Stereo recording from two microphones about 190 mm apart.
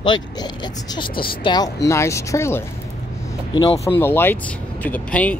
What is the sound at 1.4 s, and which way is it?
Speech, 20° left (ahead or behind).